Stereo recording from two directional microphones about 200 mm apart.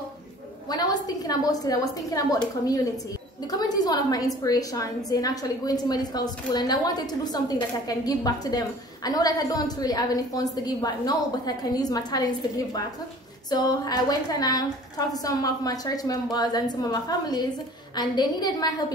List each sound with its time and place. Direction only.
0.7 s a woman's voice: 20° left (ahead or behind)